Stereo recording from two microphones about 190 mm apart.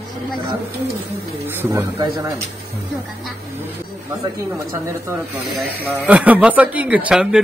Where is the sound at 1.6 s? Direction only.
15° right (ahead or behind).